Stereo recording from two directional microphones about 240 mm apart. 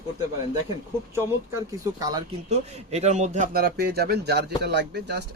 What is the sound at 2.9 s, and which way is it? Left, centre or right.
A man's voice, right.